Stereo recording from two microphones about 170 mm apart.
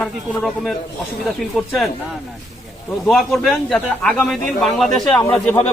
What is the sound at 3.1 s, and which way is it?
A man's voice, centre (ahead or behind).